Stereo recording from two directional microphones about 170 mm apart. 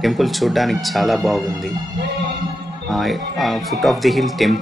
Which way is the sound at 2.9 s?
Centre (ahead or behind).